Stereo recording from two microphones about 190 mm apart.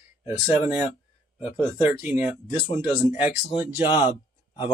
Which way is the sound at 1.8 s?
10° right (ahead or behind).